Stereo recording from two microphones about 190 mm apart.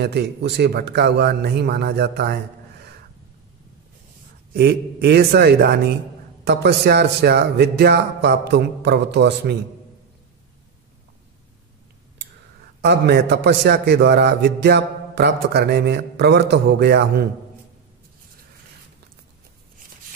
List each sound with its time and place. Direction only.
0.0 s a man's voice: 60° right (ahead or behind)
4.6 s a man's voice: 55° right (ahead or behind)
12.8 s a man's voice: 60° right (ahead or behind)